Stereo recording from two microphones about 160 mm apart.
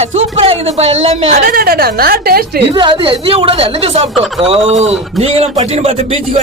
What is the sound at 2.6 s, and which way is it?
Speech, 35° right (ahead or behind).